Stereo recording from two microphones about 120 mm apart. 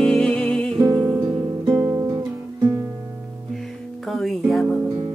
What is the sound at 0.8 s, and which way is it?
Music, 25° right (ahead or behind).